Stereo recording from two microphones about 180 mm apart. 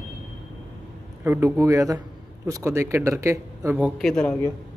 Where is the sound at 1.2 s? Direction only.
15° right (ahead or behind); by 4.5 s 5° left (ahead or behind).